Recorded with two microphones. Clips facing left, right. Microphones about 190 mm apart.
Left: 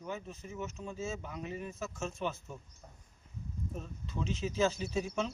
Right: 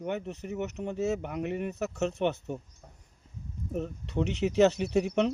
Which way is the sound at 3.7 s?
70° right (ahead or behind).